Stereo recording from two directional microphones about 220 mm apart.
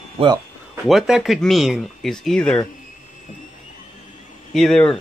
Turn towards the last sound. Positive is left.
turn(degrees=5)  # may be behind; listen again after turning